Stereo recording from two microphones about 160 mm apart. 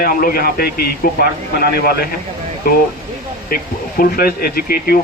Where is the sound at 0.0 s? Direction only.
65° left (ahead or behind).